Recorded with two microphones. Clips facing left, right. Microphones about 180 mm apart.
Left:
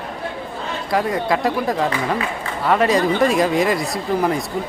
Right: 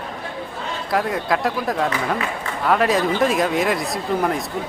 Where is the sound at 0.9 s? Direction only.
Centre (ahead or behind).